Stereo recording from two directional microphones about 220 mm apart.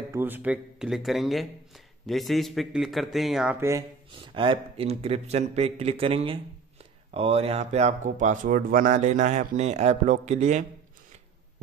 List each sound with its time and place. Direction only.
0.1 s speech: 10° right (ahead or behind)
4.3 s speech: 25° right (ahead or behind)